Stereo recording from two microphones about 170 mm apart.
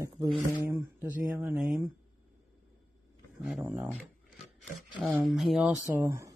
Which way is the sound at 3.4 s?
5° right (ahead or behind).